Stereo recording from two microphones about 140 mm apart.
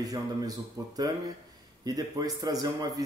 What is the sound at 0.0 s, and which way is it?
A man's voice, 25° right (ahead or behind).